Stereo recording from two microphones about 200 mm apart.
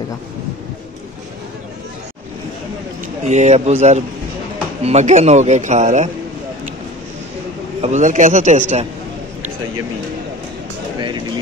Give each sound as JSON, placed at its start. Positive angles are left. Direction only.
{"t": 3.3, "sound": "speech", "side_deg": -35}
{"t": 7.8, "sound": "speech", "side_deg": -35}